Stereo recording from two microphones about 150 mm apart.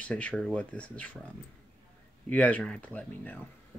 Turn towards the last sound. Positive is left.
turn(degrees=10)  # may be behind; listen again after turning